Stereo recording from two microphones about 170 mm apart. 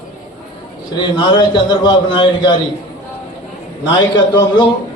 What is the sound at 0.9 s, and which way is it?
A man's voice, 25° left (ahead or behind).